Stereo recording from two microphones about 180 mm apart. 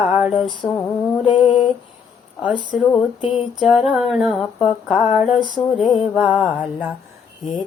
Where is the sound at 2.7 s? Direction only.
5° right (ahead or behind).